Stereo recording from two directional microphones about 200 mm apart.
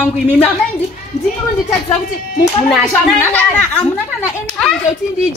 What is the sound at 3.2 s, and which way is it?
Speech, 5° left (ahead or behind).